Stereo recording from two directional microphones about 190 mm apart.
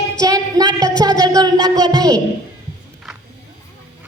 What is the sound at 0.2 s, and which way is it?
Speech, 20° right (ahead or behind).